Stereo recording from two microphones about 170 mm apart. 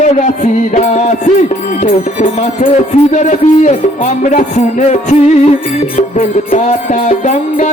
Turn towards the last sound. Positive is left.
turn(degrees=45)  # may be behind; listen again after turning